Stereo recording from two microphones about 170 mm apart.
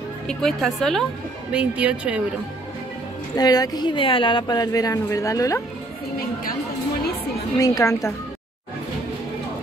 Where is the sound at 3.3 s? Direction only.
20° left (ahead or behind).